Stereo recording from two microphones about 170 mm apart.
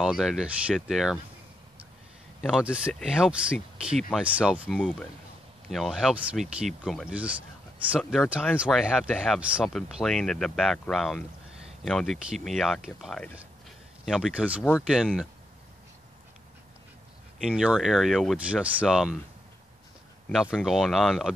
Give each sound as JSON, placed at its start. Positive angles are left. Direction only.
{"t": 0.0, "sound": "speech", "side_deg": 0}
{"t": 2.4, "sound": "speech", "side_deg": -5}
{"t": 4.7, "sound": "speech", "side_deg": 10}
{"t": 17.4, "sound": "speech", "side_deg": -5}
{"t": 20.4, "sound": "speech", "side_deg": -5}